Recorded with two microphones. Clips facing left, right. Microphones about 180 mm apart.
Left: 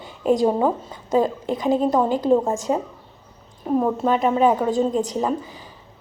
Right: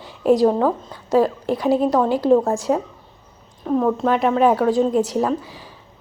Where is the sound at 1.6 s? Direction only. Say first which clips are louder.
Right 1 dB; 5° right (ahead or behind).